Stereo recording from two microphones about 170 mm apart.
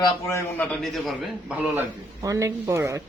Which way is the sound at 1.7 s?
20° right (ahead or behind).